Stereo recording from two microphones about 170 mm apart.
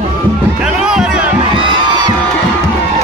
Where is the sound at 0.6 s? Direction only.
5° right (ahead or behind).